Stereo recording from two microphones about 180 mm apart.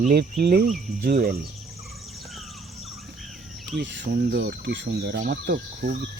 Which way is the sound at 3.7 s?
75° right (ahead or behind).